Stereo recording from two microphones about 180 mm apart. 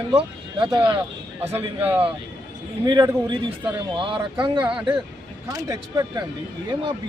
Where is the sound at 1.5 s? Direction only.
10° right (ahead or behind).